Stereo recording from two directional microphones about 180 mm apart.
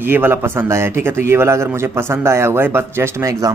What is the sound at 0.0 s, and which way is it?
A man's voice, 10° right (ahead or behind).